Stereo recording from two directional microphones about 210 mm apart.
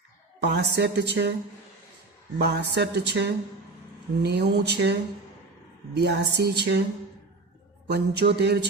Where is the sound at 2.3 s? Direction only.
50° right (ahead or behind).